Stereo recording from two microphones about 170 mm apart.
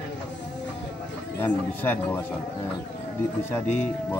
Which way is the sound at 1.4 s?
10° left (ahead or behind).